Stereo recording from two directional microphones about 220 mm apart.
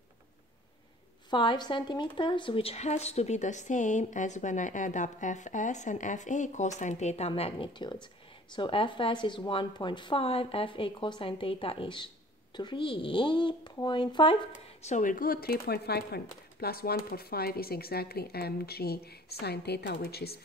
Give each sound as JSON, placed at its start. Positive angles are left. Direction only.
{"t": 1.3, "sound": "speech", "side_deg": 20}
{"t": 14.8, "sound": "speech", "side_deg": 35}